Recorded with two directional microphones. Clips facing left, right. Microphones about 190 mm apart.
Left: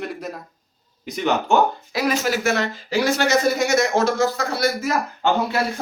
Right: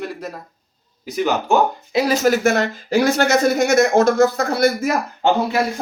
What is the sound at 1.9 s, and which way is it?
Speech, 25° right (ahead or behind).